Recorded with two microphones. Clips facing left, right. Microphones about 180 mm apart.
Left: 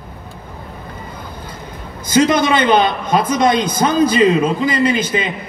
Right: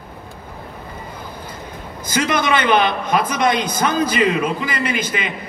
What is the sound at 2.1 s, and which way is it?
A man's voice, 25° left (ahead or behind).